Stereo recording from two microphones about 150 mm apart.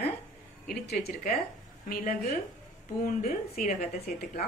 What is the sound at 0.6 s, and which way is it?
Speech, 90° left.